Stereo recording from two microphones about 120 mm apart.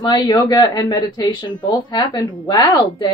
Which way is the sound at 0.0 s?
35° left (ahead or behind).